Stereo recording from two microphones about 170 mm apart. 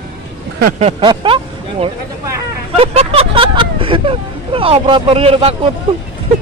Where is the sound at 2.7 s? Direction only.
35° right (ahead or behind).